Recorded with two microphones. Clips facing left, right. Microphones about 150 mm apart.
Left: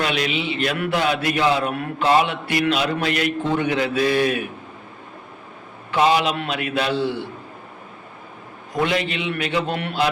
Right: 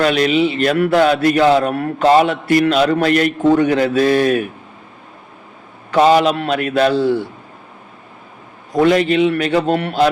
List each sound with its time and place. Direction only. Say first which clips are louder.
0.0 s a man's voice: right 9 dB; 45° right (ahead or behind)
5.9 s a man's voice: right 6 dB; 40° right (ahead or behind)
8.7 s a man's voice: right 9 dB; 45° right (ahead or behind)